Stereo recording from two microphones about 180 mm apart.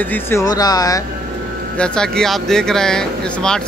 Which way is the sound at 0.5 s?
20° left (ahead or behind).